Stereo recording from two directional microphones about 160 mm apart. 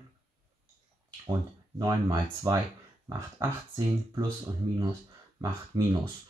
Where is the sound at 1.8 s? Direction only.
25° right (ahead or behind).